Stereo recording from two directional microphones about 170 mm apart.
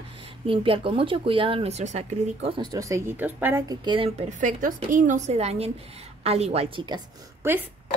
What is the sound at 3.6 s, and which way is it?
Speech, 30° right (ahead or behind).